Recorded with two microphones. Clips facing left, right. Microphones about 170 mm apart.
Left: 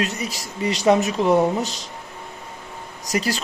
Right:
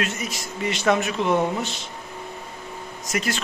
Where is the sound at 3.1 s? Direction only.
35° left (ahead or behind).